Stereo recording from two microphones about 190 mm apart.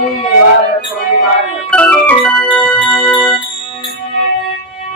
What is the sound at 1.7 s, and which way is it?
Organ, 5° left (ahead or behind).